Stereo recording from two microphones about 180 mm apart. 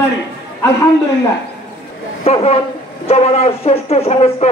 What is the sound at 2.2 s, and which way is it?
A man's voice, 35° left (ahead or behind).